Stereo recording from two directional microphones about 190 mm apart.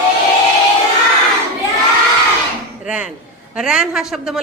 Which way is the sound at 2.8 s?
5° right (ahead or behind).